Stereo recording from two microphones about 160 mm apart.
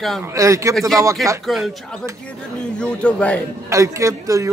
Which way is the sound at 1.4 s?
Centre (ahead or behind).